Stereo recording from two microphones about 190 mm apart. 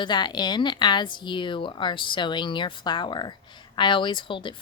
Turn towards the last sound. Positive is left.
turn(degrees=25)  # may be behind; listen again after turning